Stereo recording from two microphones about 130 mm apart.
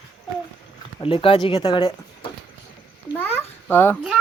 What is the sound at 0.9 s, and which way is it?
Speech, 45° left (ahead or behind).